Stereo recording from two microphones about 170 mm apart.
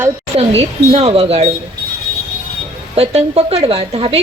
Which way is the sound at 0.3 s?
40° right (ahead or behind).